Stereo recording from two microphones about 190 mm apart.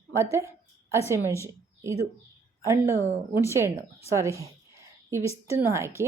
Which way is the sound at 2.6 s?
15° right (ahead or behind).